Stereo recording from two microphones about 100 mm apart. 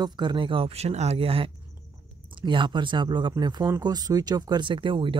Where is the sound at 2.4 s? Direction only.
50° right (ahead or behind).